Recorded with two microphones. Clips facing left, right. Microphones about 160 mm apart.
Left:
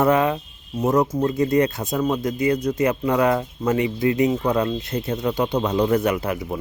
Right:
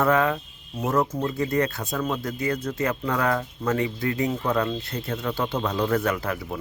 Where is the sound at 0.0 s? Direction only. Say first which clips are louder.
Left 3 dB; 20° left (ahead or behind).